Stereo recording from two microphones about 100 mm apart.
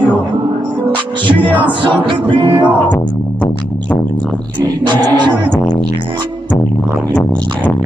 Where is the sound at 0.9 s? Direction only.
55° right (ahead or behind).